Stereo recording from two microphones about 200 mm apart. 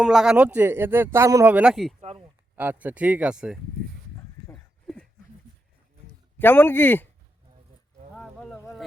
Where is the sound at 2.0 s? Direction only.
30° right (ahead or behind).